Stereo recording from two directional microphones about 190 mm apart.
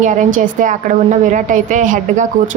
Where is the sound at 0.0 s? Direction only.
40° right (ahead or behind).